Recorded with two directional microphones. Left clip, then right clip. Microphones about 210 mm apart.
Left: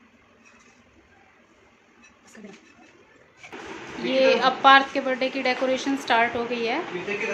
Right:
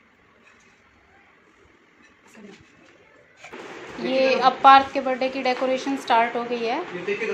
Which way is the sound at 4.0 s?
5° right (ahead or behind).